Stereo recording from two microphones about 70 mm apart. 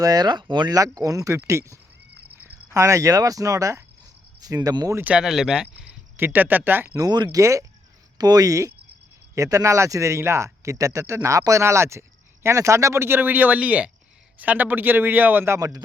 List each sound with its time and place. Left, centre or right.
0.0 s speech: right
0.8 s speech: right
4.4 s speech: right
5.2 s speech: centre
6.1 s speech: right
6.9 s speech: right
7.3 s speech: right
8.2 s speech: right
15.5 s speech: right